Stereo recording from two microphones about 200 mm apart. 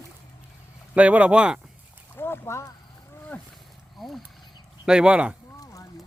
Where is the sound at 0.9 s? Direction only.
5° right (ahead or behind).